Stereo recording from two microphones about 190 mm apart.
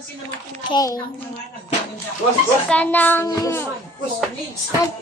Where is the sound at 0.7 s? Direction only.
20° left (ahead or behind).